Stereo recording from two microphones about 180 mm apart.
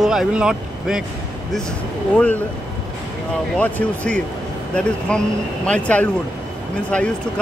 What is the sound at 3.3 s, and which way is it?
Speech, 5° left (ahead or behind).